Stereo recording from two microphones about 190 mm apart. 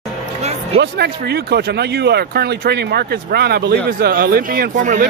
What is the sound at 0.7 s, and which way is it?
Speech, 60° right (ahead or behind).